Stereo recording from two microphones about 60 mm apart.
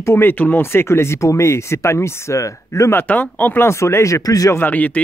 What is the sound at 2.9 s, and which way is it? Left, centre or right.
Speech, left.